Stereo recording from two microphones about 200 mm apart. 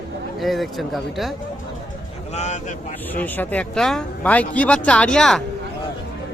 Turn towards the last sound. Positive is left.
turn(degrees=5)  # may be behind; listen again after turning